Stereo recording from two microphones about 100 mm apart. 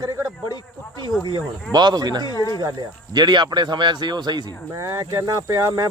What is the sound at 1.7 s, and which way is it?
Speech, 45° right (ahead or behind).